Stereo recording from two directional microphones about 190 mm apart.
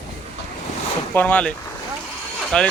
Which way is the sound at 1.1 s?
10° left (ahead or behind).